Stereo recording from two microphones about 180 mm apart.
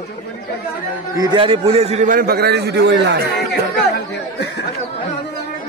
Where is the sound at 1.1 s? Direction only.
25° right (ahead or behind); by 3.3 s 75° right (ahead or behind).